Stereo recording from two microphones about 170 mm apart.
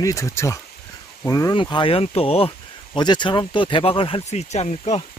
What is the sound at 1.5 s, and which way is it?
Speech, 30° left (ahead or behind).